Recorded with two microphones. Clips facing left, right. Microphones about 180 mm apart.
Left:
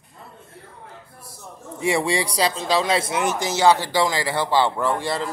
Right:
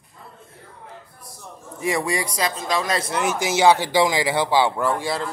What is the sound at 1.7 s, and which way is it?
A man's voice, 25° left (ahead or behind).